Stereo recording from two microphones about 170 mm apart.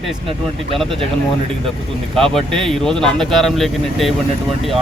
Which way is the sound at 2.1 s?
Centre (ahead or behind).